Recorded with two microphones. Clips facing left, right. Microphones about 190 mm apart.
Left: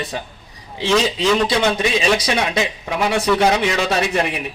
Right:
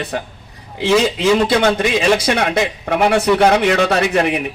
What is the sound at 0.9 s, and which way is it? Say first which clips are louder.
Speech: right 3 dB; 10° right (ahead or behind).